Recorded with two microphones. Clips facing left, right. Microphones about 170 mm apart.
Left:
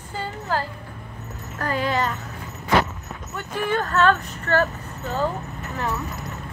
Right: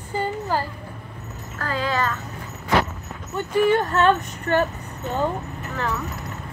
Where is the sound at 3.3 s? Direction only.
20° right (ahead or behind).